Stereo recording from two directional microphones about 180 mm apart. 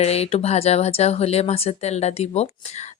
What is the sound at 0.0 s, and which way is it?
Speech, 35° left (ahead or behind).